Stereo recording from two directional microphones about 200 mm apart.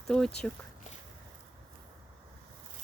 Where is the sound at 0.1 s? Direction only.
5° left (ahead or behind).